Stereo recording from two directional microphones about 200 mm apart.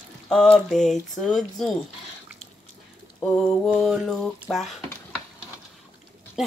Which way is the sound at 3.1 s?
Centre (ahead or behind).